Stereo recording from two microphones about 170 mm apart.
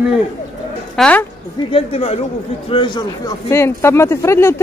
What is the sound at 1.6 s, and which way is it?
A man's voice, 35° left (ahead or behind).